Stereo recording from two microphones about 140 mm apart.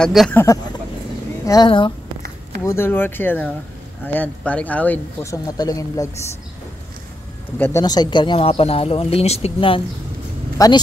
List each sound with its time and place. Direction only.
0.0 s speech: centre (ahead or behind)
0.3 s speech: 15° left (ahead or behind)
5.3 s speech: 25° left (ahead or behind)
7.5 s speech: 15° left (ahead or behind)
7.8 s speech: 30° left (ahead or behind)
10.6 s speech: 25° left (ahead or behind)